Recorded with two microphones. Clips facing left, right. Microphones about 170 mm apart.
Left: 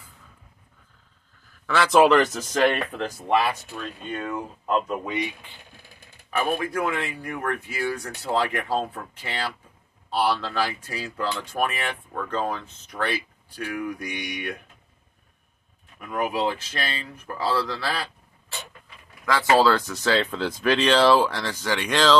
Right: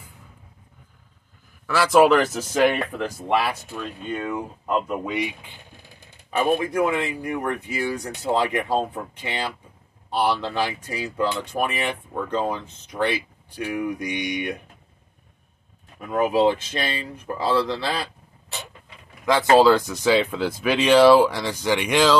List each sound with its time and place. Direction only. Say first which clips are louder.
1.7 s speech: right 1 dB; 5° right (ahead or behind)
3.8 s speech: right 3 dB; 10° right (ahead or behind)
16.1 s speech: right 6 dB; 25° right (ahead or behind)
19.2 s speech: right 4 dB; 20° right (ahead or behind)